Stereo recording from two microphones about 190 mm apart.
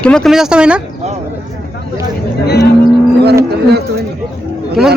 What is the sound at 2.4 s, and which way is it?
Speech, 55° left (ahead or behind).